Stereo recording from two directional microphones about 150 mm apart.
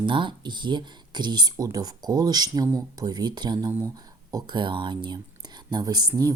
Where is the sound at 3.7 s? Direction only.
20° right (ahead or behind).